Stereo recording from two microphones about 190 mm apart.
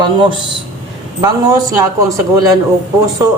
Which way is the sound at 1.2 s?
20° right (ahead or behind).